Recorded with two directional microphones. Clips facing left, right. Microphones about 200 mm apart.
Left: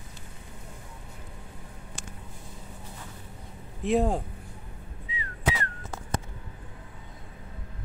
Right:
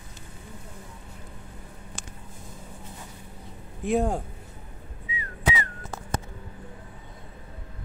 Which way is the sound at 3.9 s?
Centre (ahead or behind).